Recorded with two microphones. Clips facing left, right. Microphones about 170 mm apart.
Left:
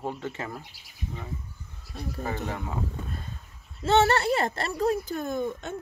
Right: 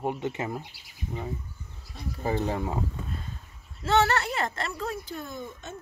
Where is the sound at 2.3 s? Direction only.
20° right (ahead or behind).